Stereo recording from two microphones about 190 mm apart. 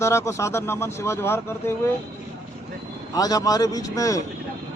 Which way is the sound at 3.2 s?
20° left (ahead or behind).